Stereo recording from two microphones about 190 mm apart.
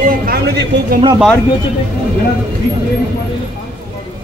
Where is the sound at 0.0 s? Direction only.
50° right (ahead or behind).